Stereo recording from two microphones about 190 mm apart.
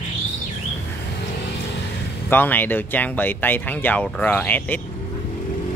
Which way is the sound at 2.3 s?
10° left (ahead or behind).